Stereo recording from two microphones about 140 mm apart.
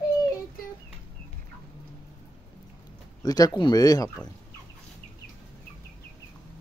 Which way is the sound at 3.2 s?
25° left (ahead or behind).